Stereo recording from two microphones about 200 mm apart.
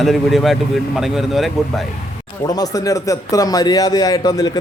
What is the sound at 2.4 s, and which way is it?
A man's voice, 20° left (ahead or behind).